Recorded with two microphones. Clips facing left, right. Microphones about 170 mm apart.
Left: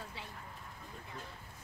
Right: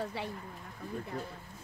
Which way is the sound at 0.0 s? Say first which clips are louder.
Right 11 dB; 80° right.